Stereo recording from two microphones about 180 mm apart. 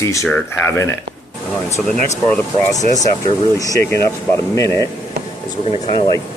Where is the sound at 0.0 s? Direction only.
15° left (ahead or behind).